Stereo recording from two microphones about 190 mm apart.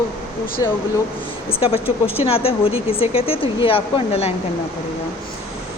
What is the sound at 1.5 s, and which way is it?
Speech, 30° left (ahead or behind).